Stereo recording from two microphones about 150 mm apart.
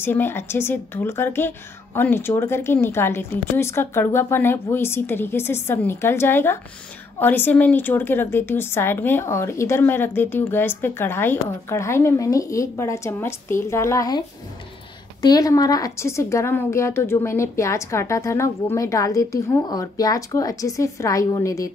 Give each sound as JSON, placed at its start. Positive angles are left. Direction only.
{"t": 0.0, "sound": "a woman's voice", "side_deg": 15}
{"t": 15.2, "sound": "a woman's voice", "side_deg": 25}